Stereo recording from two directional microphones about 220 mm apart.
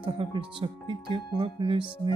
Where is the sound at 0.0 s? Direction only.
25° right (ahead or behind).